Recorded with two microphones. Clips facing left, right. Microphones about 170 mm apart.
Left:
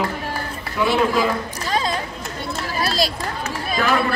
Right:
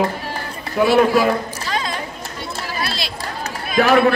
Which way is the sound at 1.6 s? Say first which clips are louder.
Left 6 dB; 35° left (ahead or behind).